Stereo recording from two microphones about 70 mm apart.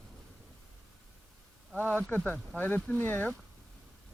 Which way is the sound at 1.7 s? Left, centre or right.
Left.